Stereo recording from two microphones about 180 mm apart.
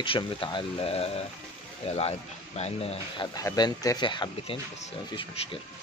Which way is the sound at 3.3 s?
20° left (ahead or behind).